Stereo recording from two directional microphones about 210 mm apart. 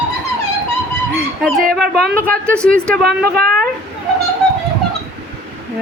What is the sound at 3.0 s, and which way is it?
Speech, 50° right (ahead or behind).